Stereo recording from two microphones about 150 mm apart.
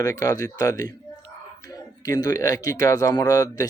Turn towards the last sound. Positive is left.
turn(degrees=25)  # may be behind; listen again after turning